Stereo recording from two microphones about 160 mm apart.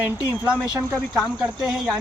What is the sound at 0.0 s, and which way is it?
Speech, 10° right (ahead or behind).